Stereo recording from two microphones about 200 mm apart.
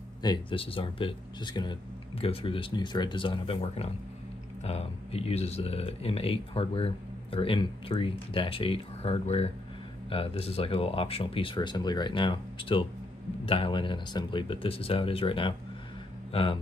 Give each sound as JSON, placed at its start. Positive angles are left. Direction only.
{"t": 0.2, "sound": "a man's voice", "side_deg": 25}